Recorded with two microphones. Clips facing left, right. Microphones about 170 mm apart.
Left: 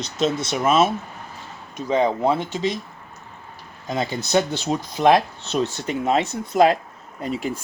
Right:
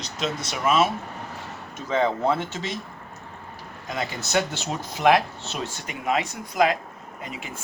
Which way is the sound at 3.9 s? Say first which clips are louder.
Left 5 dB; 20° left (ahead or behind).